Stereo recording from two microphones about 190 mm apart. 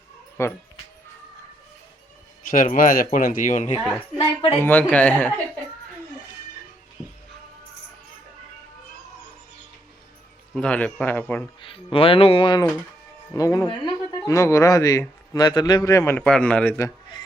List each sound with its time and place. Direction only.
0.4 s speech: 15° left (ahead or behind)
2.5 s speech: 45° left (ahead or behind)
4.6 s speech: 10° left (ahead or behind)
10.5 s speech: 5° left (ahead or behind)
11.6 s speech: 25° left (ahead or behind)